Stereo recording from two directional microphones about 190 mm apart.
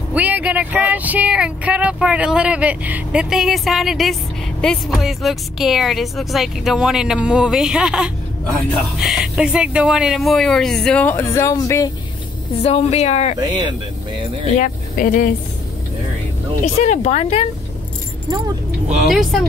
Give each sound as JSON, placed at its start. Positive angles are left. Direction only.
{"t": 0.1, "sound": "speech", "side_deg": -10}
{"t": 12.6, "sound": "speech", "side_deg": 35}
{"t": 13.4, "sound": "speech", "side_deg": -25}
{"t": 14.6, "sound": "speech", "side_deg": 45}
{"t": 16.6, "sound": "speech", "side_deg": 35}
{"t": 19.0, "sound": "speech", "side_deg": 0}